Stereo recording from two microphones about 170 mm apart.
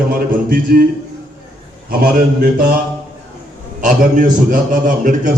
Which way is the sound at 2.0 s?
60° right (ahead or behind).